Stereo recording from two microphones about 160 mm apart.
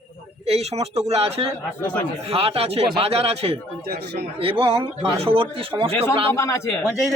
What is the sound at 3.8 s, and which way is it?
Speech, 90° right.